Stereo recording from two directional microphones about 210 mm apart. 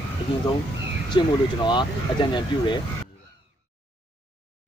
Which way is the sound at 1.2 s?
20° left (ahead or behind).